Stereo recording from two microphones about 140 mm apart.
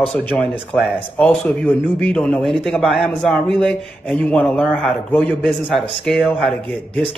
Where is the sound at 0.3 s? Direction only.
5° left (ahead or behind).